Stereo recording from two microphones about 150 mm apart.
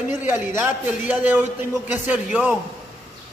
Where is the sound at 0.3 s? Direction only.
15° right (ahead or behind).